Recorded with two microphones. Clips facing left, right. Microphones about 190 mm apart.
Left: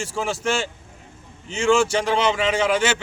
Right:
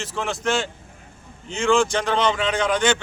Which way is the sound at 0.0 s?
10° left (ahead or behind).